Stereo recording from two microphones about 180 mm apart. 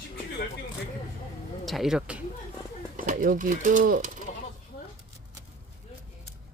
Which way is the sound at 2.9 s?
45° right (ahead or behind).